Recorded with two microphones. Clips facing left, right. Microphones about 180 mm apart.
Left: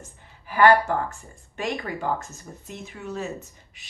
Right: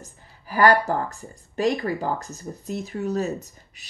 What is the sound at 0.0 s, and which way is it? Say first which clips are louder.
Speech: right 1 dB; 35° right (ahead or behind).